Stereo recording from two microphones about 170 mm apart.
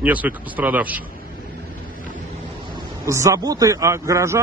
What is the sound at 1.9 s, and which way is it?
Boat, 50° left (ahead or behind).